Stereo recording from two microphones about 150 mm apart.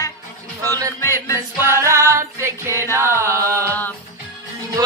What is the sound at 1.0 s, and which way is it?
Music, 20° left (ahead or behind).